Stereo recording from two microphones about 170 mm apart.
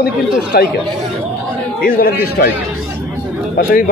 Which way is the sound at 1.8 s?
55° left (ahead or behind).